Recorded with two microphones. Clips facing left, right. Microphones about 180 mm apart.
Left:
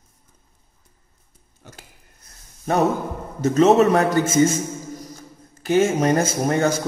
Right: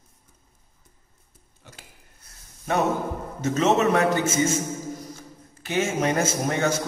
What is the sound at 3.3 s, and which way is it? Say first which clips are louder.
Speech: left 7 dB; 35° left (ahead or behind).